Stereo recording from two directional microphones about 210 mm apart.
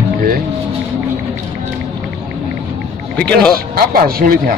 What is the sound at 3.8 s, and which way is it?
Speech, 45° right (ahead or behind).